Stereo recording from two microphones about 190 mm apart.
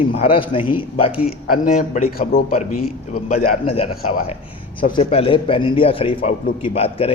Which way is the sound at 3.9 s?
50° left (ahead or behind).